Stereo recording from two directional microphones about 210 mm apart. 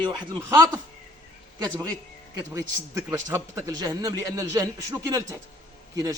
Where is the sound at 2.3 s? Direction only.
15° right (ahead or behind).